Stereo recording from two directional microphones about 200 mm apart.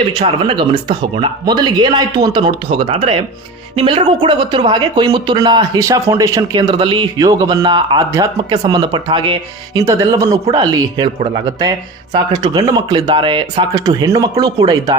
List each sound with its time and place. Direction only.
0.1 s speech: 25° right (ahead or behind)
12.1 s speech: 20° right (ahead or behind)